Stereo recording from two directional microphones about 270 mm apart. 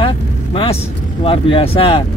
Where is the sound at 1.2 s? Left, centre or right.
Centre.